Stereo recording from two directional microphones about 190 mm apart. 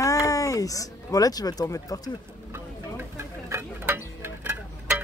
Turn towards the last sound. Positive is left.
turn(degrees=-10)  # may be behind; listen again after turning